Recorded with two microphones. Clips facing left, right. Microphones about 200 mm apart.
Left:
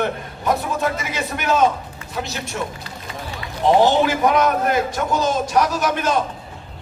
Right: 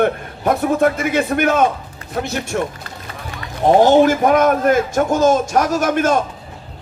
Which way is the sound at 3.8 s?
50° right (ahead or behind).